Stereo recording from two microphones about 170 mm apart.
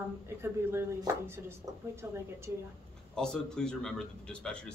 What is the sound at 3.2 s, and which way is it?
Speech, 5° left (ahead or behind).